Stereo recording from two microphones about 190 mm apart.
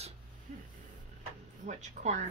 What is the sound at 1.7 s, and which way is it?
Speech, 40° right (ahead or behind).